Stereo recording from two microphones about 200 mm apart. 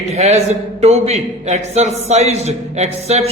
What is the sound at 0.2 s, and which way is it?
A man's voice, 35° right (ahead or behind).